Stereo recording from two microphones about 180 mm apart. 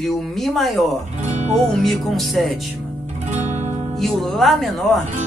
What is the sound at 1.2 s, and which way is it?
Music, 40° right (ahead or behind).